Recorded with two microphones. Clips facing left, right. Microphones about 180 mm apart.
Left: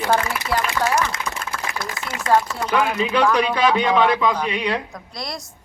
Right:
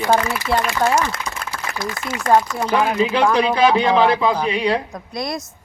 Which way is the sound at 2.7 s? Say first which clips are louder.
Right 2 dB; 30° right (ahead or behind).